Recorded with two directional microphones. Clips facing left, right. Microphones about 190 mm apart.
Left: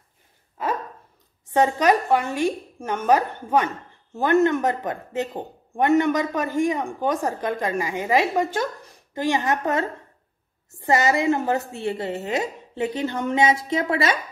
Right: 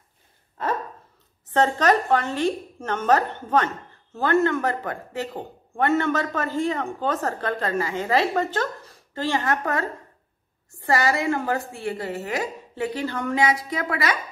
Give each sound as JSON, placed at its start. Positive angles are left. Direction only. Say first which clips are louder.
{"t": 1.5, "sound": "a woman's voice", "louder": "left 1 dB", "side_deg": 10}